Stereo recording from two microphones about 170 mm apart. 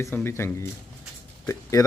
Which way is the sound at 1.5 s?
20° left (ahead or behind).